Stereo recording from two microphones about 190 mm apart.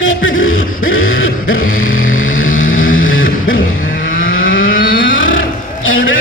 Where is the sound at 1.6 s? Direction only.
45° left (ahead or behind).